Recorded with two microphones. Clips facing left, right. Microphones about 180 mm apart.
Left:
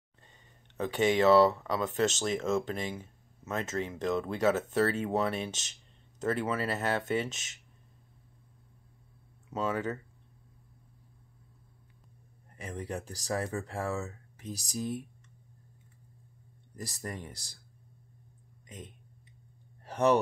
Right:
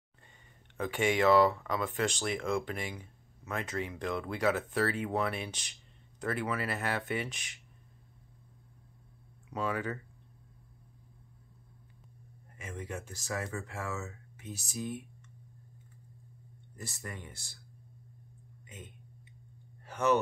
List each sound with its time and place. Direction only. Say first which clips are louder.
1.1 s speech: left 2 dB; 20° left (ahead or behind)
9.5 s speech: left 2 dB; 25° left (ahead or behind)
12.5 s speech: left 3 dB; 35° left (ahead or behind)
16.7 s speech: left 4 dB; 35° left (ahead or behind)
19.8 s a sound: left 3 dB; 35° left (ahead or behind)